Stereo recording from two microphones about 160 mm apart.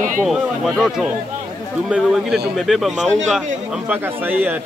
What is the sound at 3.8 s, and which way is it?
Speech, 10° right (ahead or behind).